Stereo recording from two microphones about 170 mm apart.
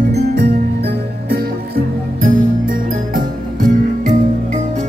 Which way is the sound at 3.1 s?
50° right (ahead or behind).